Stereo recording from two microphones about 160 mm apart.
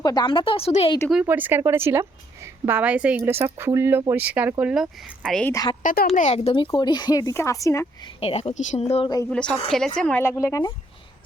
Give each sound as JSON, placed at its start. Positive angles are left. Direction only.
{"t": 0.0, "sound": "speech", "side_deg": 25}
{"t": 1.2, "sound": "a woman's voice", "side_deg": -10}
{"t": 5.5, "sound": "speech", "side_deg": 20}
{"t": 5.8, "sound": "speech", "side_deg": 60}
{"t": 6.1, "sound": "speech", "side_deg": 45}
{"t": 6.7, "sound": "speech", "side_deg": 25}
{"t": 8.2, "sound": "speech", "side_deg": 40}
{"t": 9.0, "sound": "speech", "side_deg": 20}
{"t": 9.3, "sound": "a woman's voice", "side_deg": 5}